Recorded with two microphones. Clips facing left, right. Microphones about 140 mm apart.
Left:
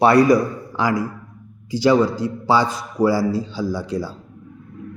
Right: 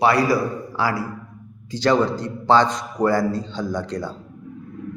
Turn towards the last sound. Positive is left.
turn(degrees=10)  # may be behind; listen again after turning